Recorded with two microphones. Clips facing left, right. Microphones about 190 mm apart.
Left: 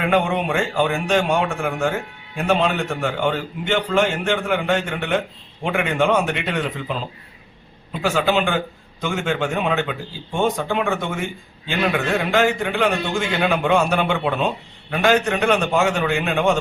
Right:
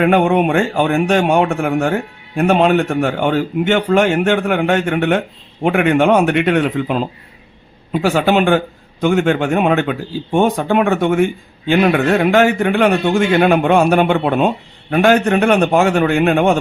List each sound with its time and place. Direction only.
0.0 s a man's voice: 55° right (ahead or behind)